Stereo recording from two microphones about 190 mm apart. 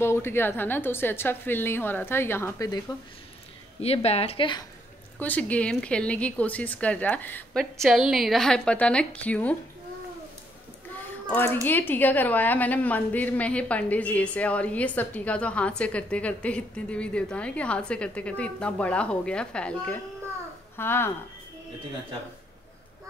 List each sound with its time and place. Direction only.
0.0 s a woman's voice: 10° left (ahead or behind)
3.8 s speech: 35° left (ahead or behind)
5.2 s a woman's voice: 10° left (ahead or behind)
11.2 s a woman's voice: 10° left (ahead or behind)